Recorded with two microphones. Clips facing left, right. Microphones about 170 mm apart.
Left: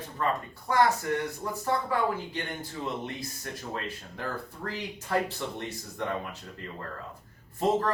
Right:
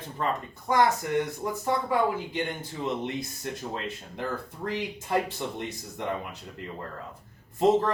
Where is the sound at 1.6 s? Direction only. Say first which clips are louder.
Right 2 dB; 15° right (ahead or behind).